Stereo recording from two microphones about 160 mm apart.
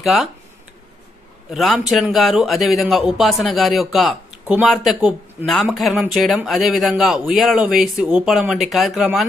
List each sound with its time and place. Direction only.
0.0 s a man's voice: centre (ahead or behind)
1.5 s a man's voice: centre (ahead or behind)